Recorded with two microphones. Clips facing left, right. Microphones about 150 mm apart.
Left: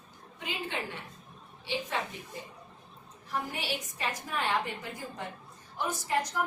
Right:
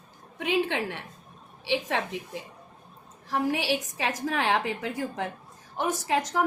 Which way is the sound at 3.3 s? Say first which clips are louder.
Right 9 dB; 90° right.